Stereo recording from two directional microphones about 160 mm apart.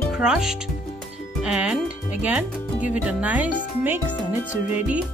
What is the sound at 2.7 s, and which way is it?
Speech, 50° left (ahead or behind).